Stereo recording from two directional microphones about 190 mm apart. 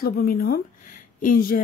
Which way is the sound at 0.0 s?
50° left (ahead or behind).